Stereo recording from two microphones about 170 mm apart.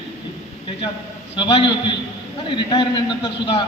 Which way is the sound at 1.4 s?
30° left (ahead or behind).